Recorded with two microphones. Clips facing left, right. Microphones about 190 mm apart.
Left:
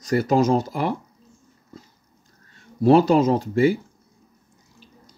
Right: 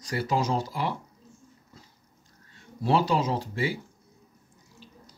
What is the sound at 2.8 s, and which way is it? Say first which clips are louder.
Speech: left 9 dB; 50° left (ahead or behind).